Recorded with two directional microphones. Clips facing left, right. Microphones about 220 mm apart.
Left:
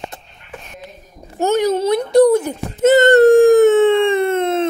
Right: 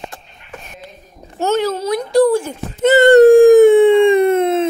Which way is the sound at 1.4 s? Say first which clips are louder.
Left 2 dB; 15° left (ahead or behind).